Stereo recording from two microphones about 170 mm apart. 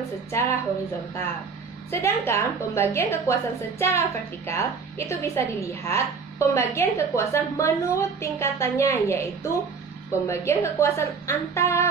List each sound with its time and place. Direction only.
0.3 s a woman's voice: 15° left (ahead or behind)
1.9 s a woman's voice: 15° left (ahead or behind)